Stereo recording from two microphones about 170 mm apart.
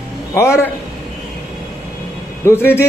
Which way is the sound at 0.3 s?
15° left (ahead or behind).